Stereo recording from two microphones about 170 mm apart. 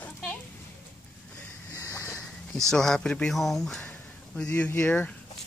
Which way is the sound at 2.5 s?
5° left (ahead or behind).